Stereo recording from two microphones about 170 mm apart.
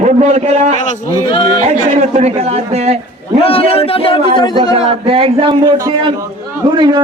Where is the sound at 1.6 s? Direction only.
40° right (ahead or behind).